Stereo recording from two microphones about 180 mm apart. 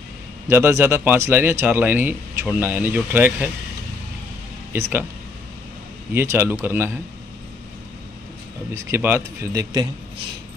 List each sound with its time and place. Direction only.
0.5 s speech: 15° right (ahead or behind)
6.1 s speech: 10° right (ahead or behind)
8.7 s speech: 15° right (ahead or behind)